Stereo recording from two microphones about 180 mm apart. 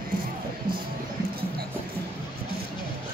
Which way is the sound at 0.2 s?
55° right (ahead or behind).